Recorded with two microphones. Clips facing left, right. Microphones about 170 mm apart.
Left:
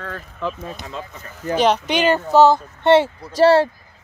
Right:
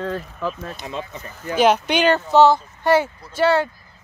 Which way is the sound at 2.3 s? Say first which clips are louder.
Left 2 dB; 15° left (ahead or behind).